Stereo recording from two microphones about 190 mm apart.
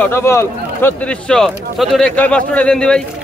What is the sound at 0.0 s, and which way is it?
Speech, 15° left (ahead or behind).